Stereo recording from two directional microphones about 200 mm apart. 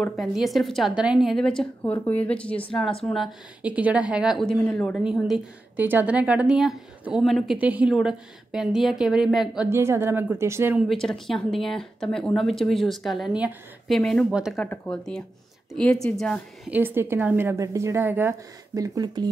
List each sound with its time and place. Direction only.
0.0 s a woman's voice: centre (ahead or behind)
9.7 s a woman's voice: 10° right (ahead or behind)
10.9 s a woman's voice: centre (ahead or behind); by 19.2 s 20° right (ahead or behind)